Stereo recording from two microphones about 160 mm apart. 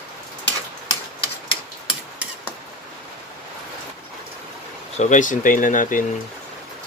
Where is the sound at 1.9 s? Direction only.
10° right (ahead or behind).